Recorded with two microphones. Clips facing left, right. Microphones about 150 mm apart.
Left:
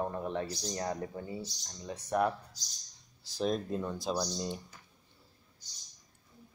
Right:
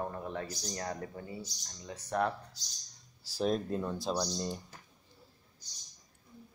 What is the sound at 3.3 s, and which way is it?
Speech, centre (ahead or behind).